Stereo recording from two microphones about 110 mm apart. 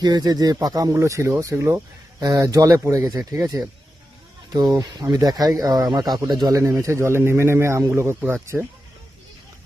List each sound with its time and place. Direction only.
0.0 s speech: 35° right (ahead or behind); by 8.6 s 20° right (ahead or behind)